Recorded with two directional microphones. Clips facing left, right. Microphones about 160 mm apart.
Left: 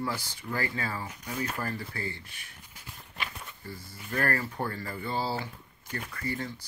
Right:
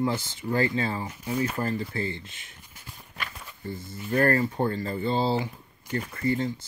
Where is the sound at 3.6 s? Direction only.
20° right (ahead or behind).